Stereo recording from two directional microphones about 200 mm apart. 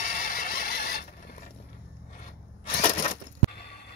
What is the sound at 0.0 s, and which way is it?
Mechanisms, 40° left (ahead or behind).